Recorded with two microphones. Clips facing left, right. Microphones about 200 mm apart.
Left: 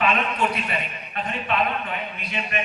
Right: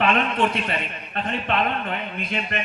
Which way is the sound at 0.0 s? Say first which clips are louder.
Right 2 dB; 50° right (ahead or behind).